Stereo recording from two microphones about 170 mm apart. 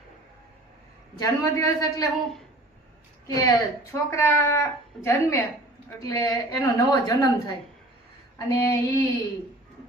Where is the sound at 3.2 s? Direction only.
20° left (ahead or behind).